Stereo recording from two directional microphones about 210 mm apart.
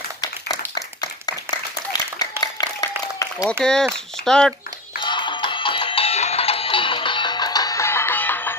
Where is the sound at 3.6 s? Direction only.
5° left (ahead or behind).